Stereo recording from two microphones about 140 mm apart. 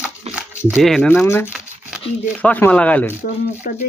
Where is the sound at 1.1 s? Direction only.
15° left (ahead or behind).